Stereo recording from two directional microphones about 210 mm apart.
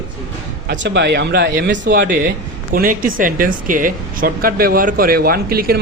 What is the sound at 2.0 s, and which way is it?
Speech, 40° right (ahead or behind).